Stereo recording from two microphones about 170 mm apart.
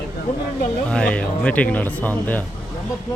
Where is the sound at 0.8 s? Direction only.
5° left (ahead or behind).